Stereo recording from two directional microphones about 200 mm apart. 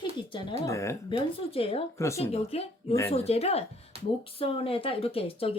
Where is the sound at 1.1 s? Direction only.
30° left (ahead or behind).